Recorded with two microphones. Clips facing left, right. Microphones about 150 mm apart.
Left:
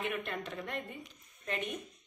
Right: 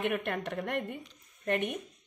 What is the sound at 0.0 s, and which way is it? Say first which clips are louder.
Speech: right 5 dB; 65° right (ahead or behind).